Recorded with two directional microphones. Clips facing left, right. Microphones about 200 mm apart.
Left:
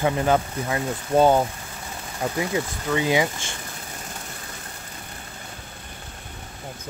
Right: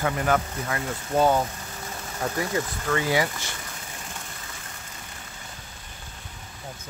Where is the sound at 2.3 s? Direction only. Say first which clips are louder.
Left 2 dB; 15° left (ahead or behind).